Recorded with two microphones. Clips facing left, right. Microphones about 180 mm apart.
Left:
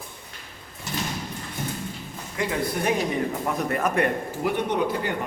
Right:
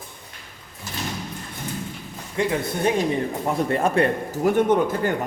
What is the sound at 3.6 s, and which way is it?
Speech, 30° right (ahead or behind).